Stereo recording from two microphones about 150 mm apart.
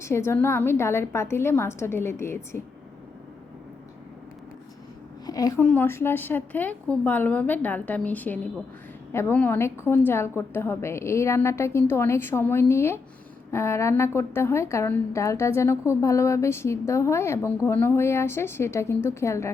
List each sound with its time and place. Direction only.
0.0 s a woman's voice: 15° left (ahead or behind)
5.2 s a sound: 25° left (ahead or behind)
5.6 s a woman's voice: 15° left (ahead or behind)